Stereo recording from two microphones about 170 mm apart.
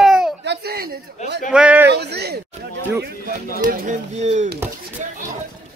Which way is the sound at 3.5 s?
50° right (ahead or behind).